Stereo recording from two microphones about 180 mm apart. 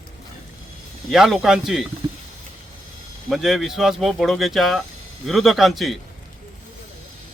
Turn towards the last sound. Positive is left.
turn(degrees=0)  # may be behind; listen again after turning